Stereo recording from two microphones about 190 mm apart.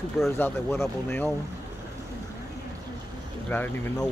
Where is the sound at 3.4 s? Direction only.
10° left (ahead or behind).